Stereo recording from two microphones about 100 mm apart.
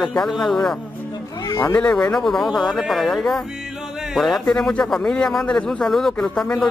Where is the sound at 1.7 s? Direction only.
10° left (ahead or behind).